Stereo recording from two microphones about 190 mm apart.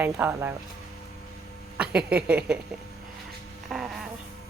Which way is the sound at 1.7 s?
5° right (ahead or behind).